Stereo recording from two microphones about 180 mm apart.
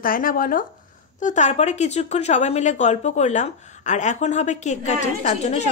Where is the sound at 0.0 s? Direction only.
50° left (ahead or behind).